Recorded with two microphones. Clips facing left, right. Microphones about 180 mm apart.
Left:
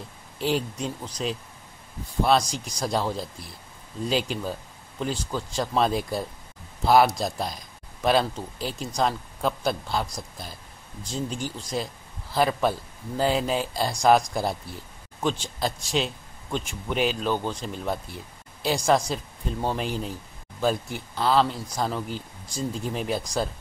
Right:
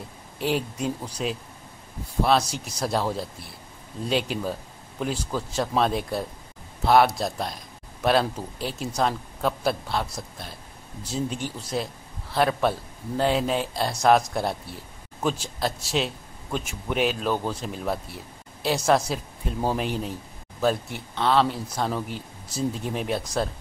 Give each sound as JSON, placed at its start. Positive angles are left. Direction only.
{"t": 0.4, "sound": "a man's voice", "side_deg": 0}